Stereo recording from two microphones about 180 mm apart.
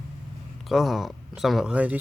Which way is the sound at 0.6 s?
Centre (ahead or behind).